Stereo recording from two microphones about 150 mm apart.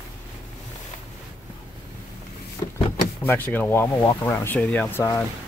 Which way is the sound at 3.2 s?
10° left (ahead or behind).